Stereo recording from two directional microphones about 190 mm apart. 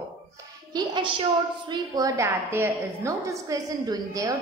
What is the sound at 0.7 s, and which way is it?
A woman's voice, 25° right (ahead or behind).